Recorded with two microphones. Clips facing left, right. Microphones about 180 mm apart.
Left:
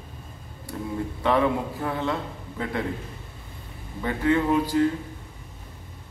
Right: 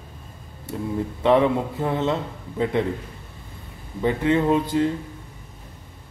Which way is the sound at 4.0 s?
20° right (ahead or behind).